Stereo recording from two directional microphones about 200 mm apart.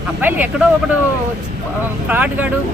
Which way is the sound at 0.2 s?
10° right (ahead or behind).